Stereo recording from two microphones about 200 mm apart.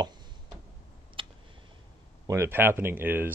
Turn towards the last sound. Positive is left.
turn(degrees=-10)  # may be behind; listen again after turning